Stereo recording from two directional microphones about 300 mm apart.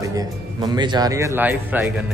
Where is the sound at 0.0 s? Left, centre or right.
Centre.